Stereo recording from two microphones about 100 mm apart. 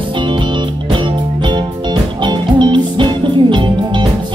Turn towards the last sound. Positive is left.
turn(degrees=-50)  # may be behind; listen again after turning